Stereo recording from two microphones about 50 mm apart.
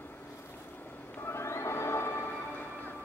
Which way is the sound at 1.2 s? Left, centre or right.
Left.